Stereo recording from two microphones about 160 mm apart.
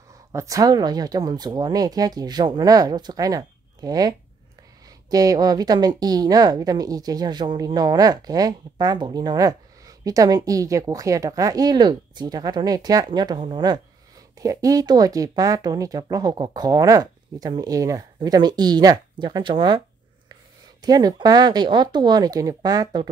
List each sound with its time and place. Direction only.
0.3 s a woman's voice: 20° right (ahead or behind)
20.8 s a woman's voice: 25° right (ahead or behind)